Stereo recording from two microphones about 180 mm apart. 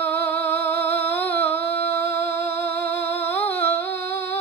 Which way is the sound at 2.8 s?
60° right (ahead or behind).